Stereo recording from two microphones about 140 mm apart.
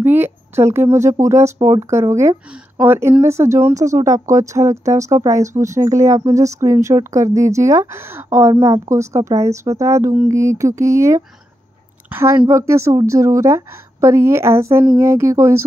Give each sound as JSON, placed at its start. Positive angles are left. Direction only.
{"t": 0.0, "sound": "a woman's voice", "side_deg": -15}